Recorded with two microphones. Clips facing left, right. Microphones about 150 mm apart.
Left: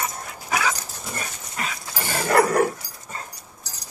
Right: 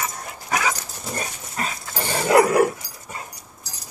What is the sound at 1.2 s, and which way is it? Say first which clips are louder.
Dog: right 3 dB; 35° right (ahead or behind).